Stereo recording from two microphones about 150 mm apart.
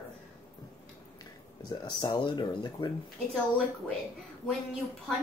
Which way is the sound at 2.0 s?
30° left (ahead or behind).